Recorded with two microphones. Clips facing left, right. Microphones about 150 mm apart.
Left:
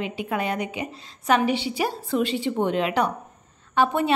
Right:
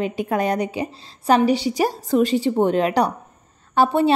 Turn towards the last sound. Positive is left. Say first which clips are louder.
# right 4 dB
turn(degrees=-30)  # may be behind; listen again after turning